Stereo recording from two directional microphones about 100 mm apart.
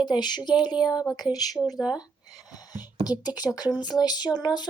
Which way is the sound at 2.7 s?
40° left (ahead or behind).